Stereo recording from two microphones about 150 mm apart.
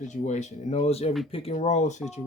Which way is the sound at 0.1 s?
50° left (ahead or behind).